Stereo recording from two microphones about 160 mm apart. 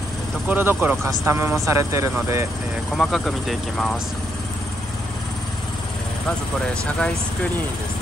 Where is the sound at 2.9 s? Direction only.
Centre (ahead or behind).